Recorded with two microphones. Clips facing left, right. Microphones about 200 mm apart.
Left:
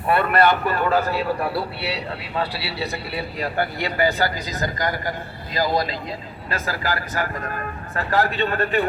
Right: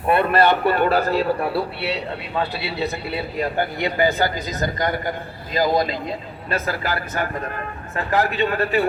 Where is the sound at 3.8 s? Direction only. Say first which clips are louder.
Right 2 dB; 20° right (ahead or behind).